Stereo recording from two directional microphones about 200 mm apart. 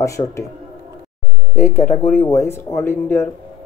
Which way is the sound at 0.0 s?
15° left (ahead or behind).